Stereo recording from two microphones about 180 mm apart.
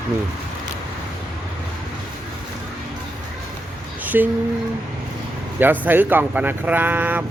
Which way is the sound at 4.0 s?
10° right (ahead or behind).